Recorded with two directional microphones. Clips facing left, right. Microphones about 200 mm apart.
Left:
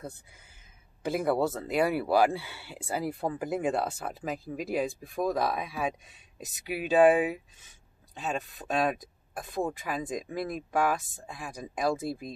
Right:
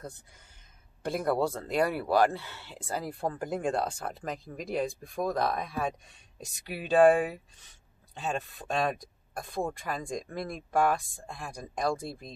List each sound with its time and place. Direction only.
1.0 s speech: 5° left (ahead or behind)